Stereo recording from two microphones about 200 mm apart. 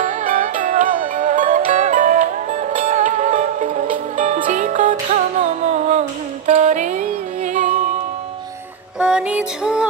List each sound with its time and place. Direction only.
0.0 s music: 40° right (ahead or behind)
9.0 s music: 5° right (ahead or behind)